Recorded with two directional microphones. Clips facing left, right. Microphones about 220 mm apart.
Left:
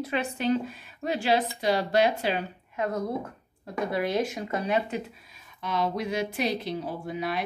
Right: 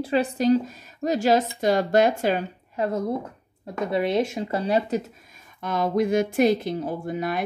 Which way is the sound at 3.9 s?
25° right (ahead or behind).